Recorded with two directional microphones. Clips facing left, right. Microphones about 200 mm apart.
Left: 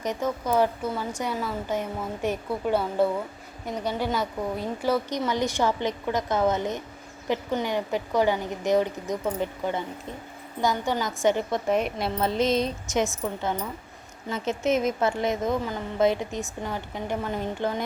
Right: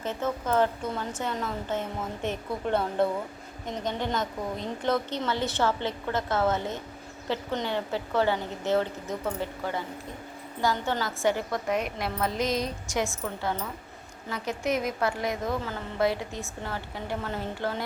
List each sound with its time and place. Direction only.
0.0 s a woman's voice: 15° left (ahead or behind)